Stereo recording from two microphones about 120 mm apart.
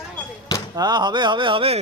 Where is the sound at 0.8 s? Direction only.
35° right (ahead or behind).